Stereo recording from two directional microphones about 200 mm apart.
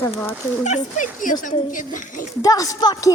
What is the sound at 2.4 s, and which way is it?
Speech, 15° left (ahead or behind).